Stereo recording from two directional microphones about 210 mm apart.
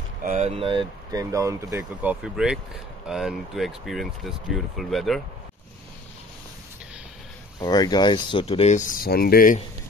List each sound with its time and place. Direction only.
0.2 s speech: 35° right (ahead or behind); by 5.2 s centre (ahead or behind)
7.5 s speech: 20° left (ahead or behind); by 9.6 s 45° left (ahead or behind)